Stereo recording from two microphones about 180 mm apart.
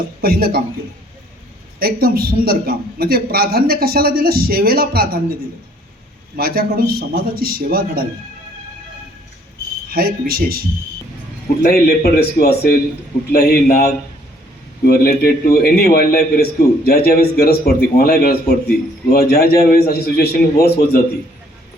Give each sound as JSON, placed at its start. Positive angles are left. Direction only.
{"t": 0.2, "sound": "a woman's voice", "side_deg": -55}
{"t": 1.8, "sound": "a woman's voice", "side_deg": -55}
{"t": 6.3, "sound": "a woman's voice", "side_deg": -55}
{"t": 9.9, "sound": "a woman's voice", "side_deg": -55}
{"t": 11.7, "sound": "a man's voice", "side_deg": 60}